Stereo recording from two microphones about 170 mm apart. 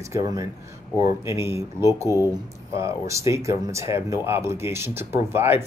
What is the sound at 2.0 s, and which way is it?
Speech, 20° left (ahead or behind).